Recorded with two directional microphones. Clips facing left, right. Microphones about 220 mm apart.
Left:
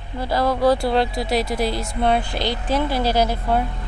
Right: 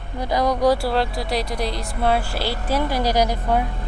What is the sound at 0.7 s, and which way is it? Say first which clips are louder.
A woman's voice: left 1 dB; 5° right (ahead or behind).